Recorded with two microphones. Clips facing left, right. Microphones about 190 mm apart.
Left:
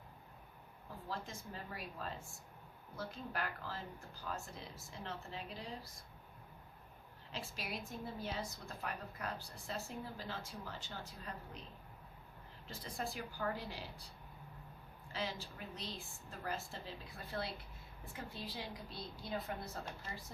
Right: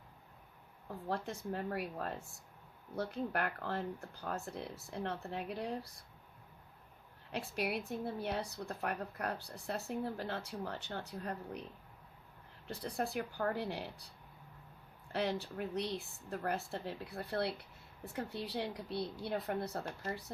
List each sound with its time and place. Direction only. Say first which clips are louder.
1.0 s a woman's voice: right 7 dB; 65° right (ahead or behind)
7.3 s a woman's voice: right 8 dB; 60° right (ahead or behind)
12.6 s a woman's voice: right 6 dB; 60° right (ahead or behind)
15.1 s a woman's voice: right 7 dB; 65° right (ahead or behind)